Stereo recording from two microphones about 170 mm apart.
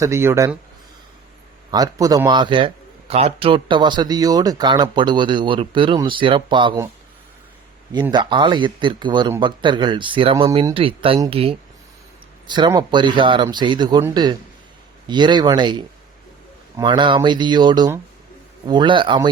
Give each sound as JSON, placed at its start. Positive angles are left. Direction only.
{"t": 0.0, "sound": "speech", "side_deg": -15}
{"t": 1.7, "sound": "a man's voice", "side_deg": -20}
{"t": 8.1, "sound": "a man's voice", "side_deg": -25}